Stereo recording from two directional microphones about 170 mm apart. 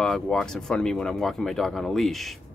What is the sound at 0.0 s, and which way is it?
Speech, 5° left (ahead or behind).